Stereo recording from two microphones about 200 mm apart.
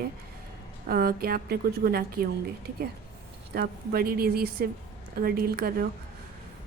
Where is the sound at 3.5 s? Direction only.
50° right (ahead or behind).